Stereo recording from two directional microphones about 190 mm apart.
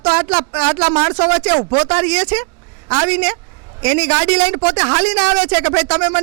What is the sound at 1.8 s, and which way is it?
Speech, 20° right (ahead or behind).